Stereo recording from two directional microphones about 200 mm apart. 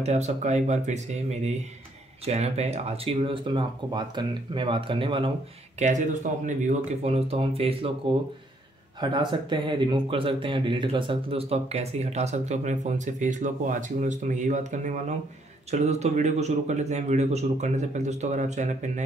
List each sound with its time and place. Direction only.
0.0 s speech: 35° right (ahead or behind)
5.8 s speech: 35° right (ahead or behind)
9.0 s speech: 25° right (ahead or behind)